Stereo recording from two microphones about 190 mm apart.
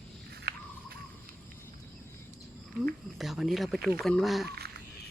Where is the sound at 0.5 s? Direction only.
55° right (ahead or behind).